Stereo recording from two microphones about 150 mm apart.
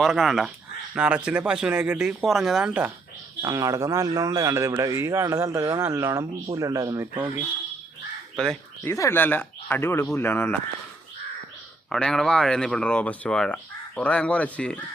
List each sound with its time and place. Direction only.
0.0 s speech: centre (ahead or behind)
3.4 s a man's voice: 20° right (ahead or behind)
8.4 s speech: 5° left (ahead or behind)
8.9 s speech: 15° left (ahead or behind)
11.9 s speech: 5° left (ahead or behind)